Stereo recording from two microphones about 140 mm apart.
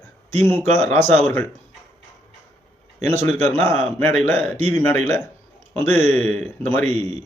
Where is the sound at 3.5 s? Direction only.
15° left (ahead or behind).